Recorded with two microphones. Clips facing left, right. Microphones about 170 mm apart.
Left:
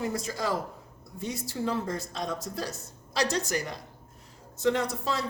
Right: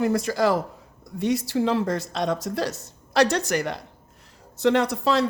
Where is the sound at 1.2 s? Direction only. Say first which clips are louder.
Right 9 dB; 80° right.